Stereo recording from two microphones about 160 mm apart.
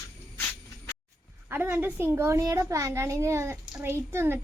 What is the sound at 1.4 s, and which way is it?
A child's voice, 15° right (ahead or behind).